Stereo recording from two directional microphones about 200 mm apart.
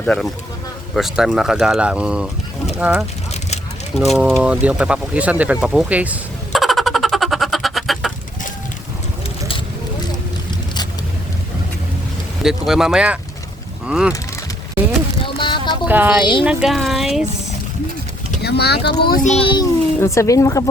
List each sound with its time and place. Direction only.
0.0 s speech: 5° left (ahead or behind)
4.1 s speech: centre (ahead or behind)
4.5 s a sound: 5° right (ahead or behind)
12.4 s speech: centre (ahead or behind)
15.2 s a sound: 25° left (ahead or behind)
15.9 s speech: 10° right (ahead or behind)
18.4 s speech: 55° left (ahead or behind)
19.1 s speech: 35° left (ahead or behind)
20.0 s speech: 15° left (ahead or behind)